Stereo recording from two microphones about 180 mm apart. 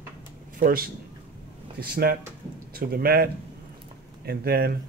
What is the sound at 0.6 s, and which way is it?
Speech, 55° right (ahead or behind).